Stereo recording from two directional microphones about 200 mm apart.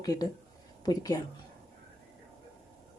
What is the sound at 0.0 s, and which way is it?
Speech, 20° left (ahead or behind).